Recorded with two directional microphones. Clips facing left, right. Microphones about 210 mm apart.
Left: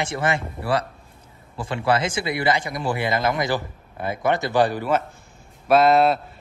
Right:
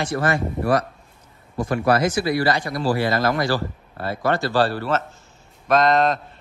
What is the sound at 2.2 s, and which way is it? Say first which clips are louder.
A man's voice: right 2 dB; 20° left (ahead or behind).